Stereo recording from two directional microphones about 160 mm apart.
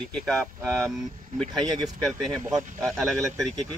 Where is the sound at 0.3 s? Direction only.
Centre (ahead or behind).